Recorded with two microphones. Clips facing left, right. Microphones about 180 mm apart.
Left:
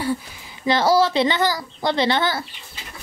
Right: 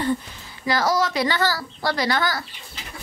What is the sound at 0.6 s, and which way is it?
A woman's voice, 25° left (ahead or behind).